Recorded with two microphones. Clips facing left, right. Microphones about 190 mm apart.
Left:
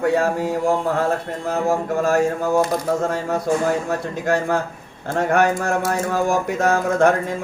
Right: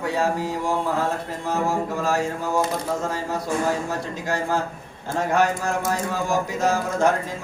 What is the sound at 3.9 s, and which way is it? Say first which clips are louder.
A man's voice: left 6 dB; 55° left (ahead or behind).